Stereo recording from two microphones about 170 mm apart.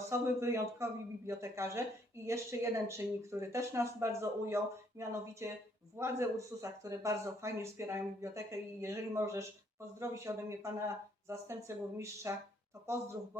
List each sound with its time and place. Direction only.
0.1 s speech: 15° right (ahead or behind)